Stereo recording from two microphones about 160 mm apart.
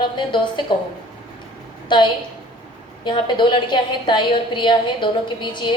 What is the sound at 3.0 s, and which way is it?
A woman's voice, 30° left (ahead or behind).